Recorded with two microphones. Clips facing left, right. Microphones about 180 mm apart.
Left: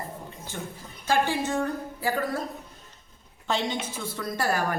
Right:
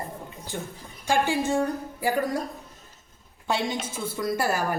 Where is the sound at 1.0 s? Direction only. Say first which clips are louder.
Right 1 dB; 10° right (ahead or behind).